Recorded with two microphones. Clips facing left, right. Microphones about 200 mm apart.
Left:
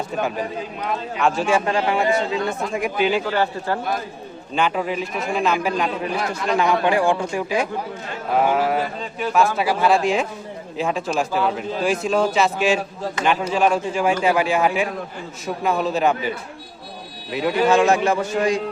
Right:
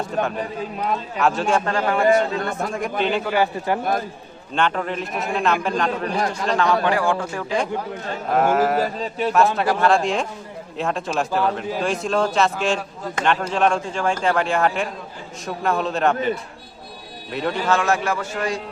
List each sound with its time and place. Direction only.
0.1 s speech: 5° left (ahead or behind)
2.0 s a man's voice: 50° right (ahead or behind)
2.7 s speech: 5° left (ahead or behind)
3.2 s speech: 10° right (ahead or behind)
4.5 s a man's voice: 5° left (ahead or behind)
9.0 s speech: 30° right (ahead or behind)
9.6 s a man's voice: 5° left (ahead or behind)
17.7 s a man's voice: 20° left (ahead or behind)